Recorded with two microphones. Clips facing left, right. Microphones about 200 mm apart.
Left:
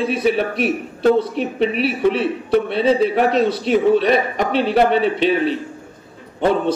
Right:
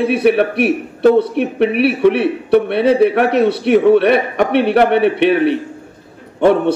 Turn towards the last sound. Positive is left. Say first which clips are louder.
# right 5 dB
turn(degrees=-65)  # may be behind; listen again after turning